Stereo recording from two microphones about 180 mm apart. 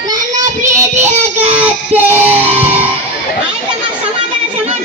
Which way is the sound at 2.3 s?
35° right (ahead or behind).